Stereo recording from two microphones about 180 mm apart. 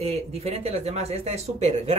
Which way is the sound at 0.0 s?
35° right (ahead or behind).